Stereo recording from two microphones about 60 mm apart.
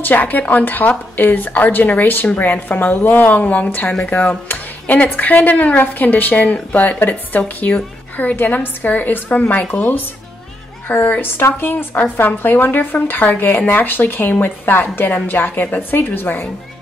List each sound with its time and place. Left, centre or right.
0.0 s speech: left